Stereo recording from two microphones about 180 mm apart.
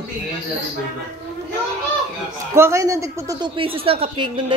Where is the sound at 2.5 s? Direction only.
15° right (ahead or behind).